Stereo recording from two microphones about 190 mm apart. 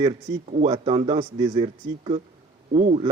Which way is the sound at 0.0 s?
35° right (ahead or behind).